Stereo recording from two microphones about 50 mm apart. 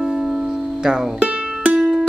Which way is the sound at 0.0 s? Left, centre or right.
Centre.